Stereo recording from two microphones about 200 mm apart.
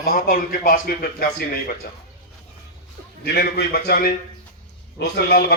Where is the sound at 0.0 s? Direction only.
45° left (ahead or behind).